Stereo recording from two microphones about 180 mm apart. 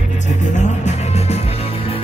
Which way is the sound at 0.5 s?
40° left (ahead or behind).